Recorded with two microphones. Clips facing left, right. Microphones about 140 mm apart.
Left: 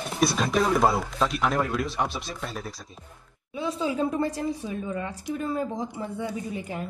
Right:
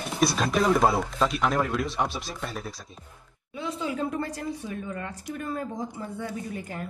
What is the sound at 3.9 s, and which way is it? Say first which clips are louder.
Speech: left 4 dB; 20° left (ahead or behind).